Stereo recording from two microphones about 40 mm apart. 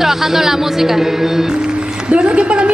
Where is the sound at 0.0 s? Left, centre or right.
Centre.